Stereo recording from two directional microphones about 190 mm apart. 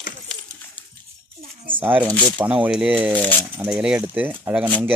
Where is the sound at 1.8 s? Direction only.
10° right (ahead or behind).